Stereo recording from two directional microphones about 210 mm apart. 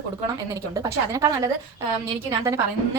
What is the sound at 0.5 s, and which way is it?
Speech, 15° right (ahead or behind).